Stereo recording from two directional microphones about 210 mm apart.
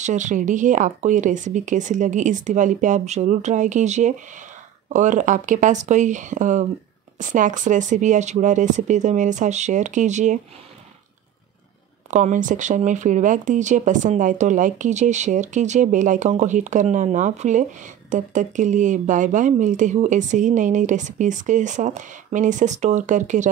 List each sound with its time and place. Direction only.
0.0 s speech: 35° right (ahead or behind)
12.1 s speech: 35° right (ahead or behind)